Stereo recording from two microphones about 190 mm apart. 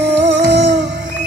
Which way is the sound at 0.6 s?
35° right (ahead or behind).